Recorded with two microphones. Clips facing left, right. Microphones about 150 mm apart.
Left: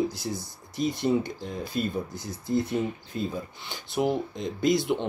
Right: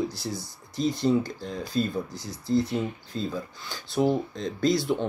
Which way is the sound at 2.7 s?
20° left (ahead or behind).